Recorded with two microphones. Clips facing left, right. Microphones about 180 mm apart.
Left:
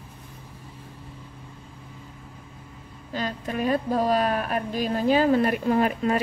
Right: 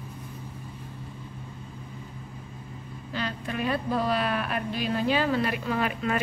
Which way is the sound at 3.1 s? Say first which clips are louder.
Left 3 dB; 40° left (ahead or behind).